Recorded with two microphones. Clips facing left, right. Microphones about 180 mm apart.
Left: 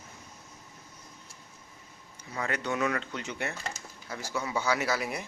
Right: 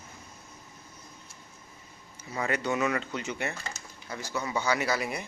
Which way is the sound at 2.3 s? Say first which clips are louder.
Right 3 dB; 10° right (ahead or behind).